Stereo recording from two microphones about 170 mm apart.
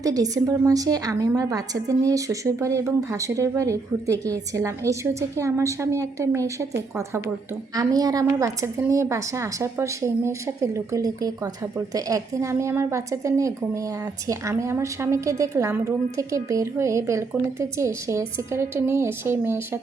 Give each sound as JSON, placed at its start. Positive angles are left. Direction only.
{"t": 0.0, "sound": "a woman's voice", "side_deg": -20}
{"t": 7.8, "sound": "a woman's voice", "side_deg": -20}